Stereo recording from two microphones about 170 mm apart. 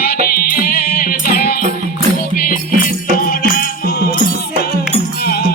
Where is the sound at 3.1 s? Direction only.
55° left (ahead or behind).